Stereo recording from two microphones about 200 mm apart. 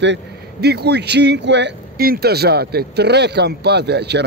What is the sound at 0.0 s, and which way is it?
Speech, 60° right (ahead or behind).